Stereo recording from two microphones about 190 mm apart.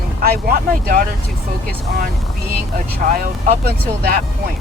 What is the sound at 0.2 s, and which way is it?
Speech, 50° right (ahead or behind).